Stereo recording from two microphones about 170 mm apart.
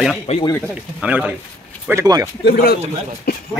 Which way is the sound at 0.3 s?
40° left (ahead or behind).